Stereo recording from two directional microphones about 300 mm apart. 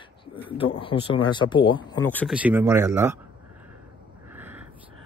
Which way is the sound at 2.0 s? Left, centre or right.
Centre.